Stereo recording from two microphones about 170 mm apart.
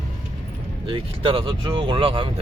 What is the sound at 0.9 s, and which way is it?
Speech, 30° right (ahead or behind).